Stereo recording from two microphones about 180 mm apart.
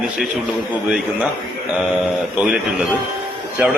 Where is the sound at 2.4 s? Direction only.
Centre (ahead or behind).